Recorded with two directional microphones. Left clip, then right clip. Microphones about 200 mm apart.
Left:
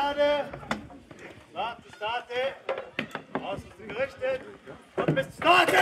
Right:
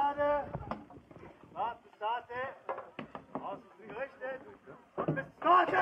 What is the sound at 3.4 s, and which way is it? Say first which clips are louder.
Chop: left 7 dB; 70° left (ahead or behind).